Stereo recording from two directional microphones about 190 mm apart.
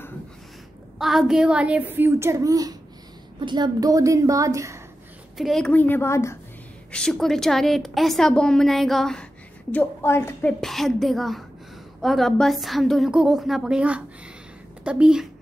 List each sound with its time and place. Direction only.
0.9 s a child's voice: centre (ahead or behind)
5.4 s a woman's voice: centre (ahead or behind)
6.9 s a woman's voice: 5° left (ahead or behind)
10.6 s a woman's voice: centre (ahead or behind)